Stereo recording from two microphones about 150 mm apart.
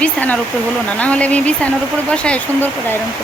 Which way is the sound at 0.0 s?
10° left (ahead or behind).